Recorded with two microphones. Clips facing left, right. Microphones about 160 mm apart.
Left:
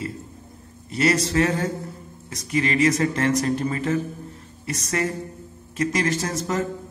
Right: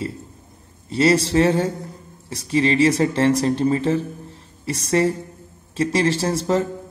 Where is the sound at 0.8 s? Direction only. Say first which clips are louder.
Right 4 dB; 30° right (ahead or behind).